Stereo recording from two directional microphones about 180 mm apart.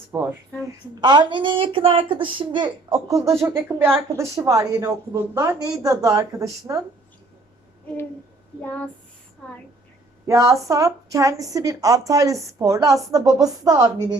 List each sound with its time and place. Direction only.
0.1 s speech: 10° right (ahead or behind)
1.0 s a woman's voice: 25° right (ahead or behind)
8.6 s a sound: 10° left (ahead or behind)
10.2 s a woman's voice: 15° right (ahead or behind)